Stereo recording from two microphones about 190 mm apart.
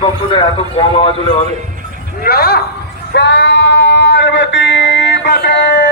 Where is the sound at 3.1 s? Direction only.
65° left (ahead or behind).